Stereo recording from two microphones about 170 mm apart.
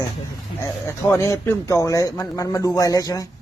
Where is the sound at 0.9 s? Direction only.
15° left (ahead or behind).